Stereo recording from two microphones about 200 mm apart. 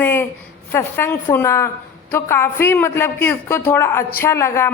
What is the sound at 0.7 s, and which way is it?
A woman's voice, 10° left (ahead or behind).